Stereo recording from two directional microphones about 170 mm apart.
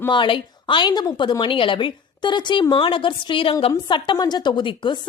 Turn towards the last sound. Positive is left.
turn(degrees=25)  # may be behind; listen again after turning